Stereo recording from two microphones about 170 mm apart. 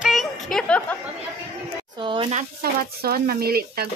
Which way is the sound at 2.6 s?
60° right (ahead or behind).